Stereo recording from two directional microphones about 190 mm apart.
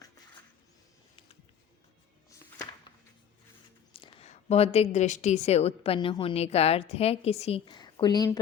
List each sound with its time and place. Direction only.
3.9 s a woman's voice: 30° left (ahead or behind)
7.6 s speech: 20° left (ahead or behind)